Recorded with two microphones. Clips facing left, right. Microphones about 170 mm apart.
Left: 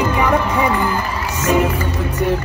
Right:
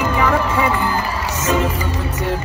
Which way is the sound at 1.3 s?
10° left (ahead or behind).